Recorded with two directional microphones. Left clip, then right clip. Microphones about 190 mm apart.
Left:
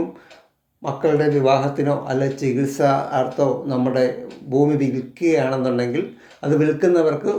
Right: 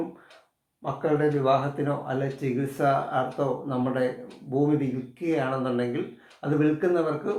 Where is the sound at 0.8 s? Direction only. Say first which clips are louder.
Left 6 dB; 35° left (ahead or behind).